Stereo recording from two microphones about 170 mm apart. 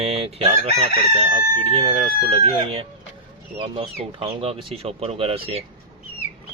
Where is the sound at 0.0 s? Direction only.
35° right (ahead or behind).